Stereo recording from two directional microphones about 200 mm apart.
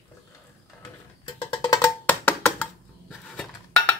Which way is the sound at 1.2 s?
20° left (ahead or behind).